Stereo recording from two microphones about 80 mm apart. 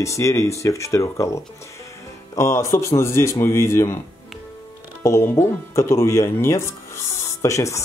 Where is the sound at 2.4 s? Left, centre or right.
Left.